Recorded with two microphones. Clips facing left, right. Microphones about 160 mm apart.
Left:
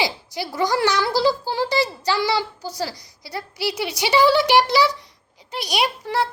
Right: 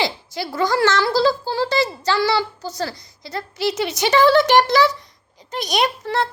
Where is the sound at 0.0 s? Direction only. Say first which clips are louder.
Right 1 dB; 15° left (ahead or behind).